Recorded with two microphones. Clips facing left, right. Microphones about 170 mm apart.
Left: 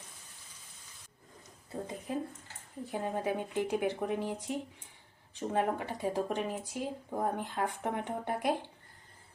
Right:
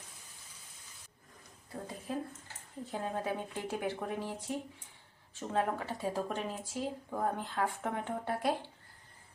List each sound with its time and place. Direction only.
1.7 s a woman's voice: 20° left (ahead or behind)